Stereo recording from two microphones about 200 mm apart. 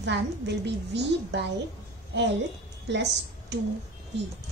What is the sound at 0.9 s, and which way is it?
Speech, 60° right (ahead or behind).